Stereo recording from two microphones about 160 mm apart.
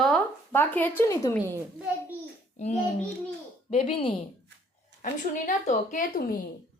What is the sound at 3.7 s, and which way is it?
Speech, 35° left (ahead or behind).